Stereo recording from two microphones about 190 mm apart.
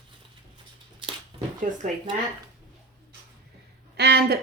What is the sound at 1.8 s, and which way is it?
Speech, 40° right (ahead or behind).